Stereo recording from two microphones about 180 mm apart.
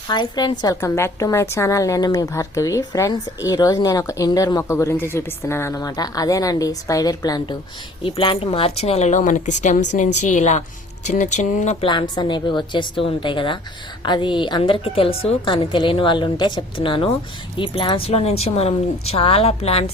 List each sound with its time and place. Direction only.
0.1 s a woman's voice: 25° left (ahead or behind); by 11.9 s 40° left (ahead or behind)
11.9 s a woman's voice: 25° left (ahead or behind)